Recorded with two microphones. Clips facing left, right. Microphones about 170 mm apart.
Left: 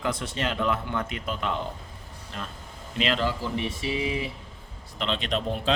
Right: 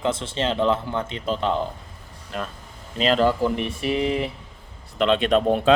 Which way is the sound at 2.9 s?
40° right (ahead or behind).